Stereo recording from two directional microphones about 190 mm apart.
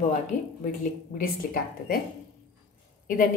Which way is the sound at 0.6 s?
45° left (ahead or behind).